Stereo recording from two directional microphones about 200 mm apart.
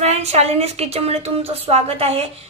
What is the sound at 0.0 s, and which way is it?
A woman's voice, 35° right (ahead or behind).